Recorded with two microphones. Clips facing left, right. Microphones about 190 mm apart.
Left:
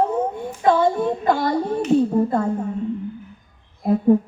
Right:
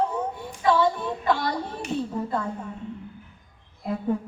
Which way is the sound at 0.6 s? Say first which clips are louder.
Left 5 dB; 50° left (ahead or behind).